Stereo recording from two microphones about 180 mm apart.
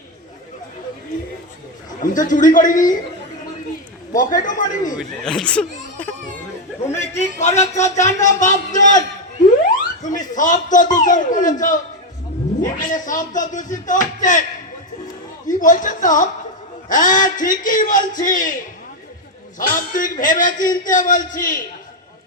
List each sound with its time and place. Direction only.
2.0 s speech: 45° left (ahead or behind)
4.1 s speech: 45° left (ahead or behind)
4.9 s speech: 5° left (ahead or behind)
7.2 s a man's voice: 40° left (ahead or behind)
15.4 s a man's voice: 45° left (ahead or behind)
19.5 s speech: 50° left (ahead or behind)